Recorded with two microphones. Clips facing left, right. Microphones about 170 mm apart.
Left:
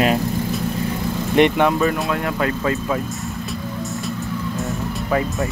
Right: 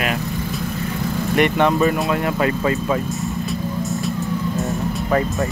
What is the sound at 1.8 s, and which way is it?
Speech, 5° right (ahead or behind).